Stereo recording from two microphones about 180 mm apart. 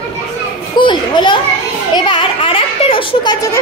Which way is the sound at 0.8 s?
25° left (ahead or behind).